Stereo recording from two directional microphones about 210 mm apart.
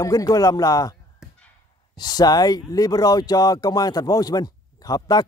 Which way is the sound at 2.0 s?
20° left (ahead or behind).